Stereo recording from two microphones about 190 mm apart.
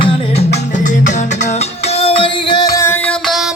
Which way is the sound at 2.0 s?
30° left (ahead or behind).